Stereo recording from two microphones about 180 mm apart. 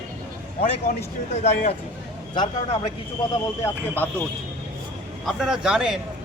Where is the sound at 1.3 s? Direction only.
35° left (ahead or behind).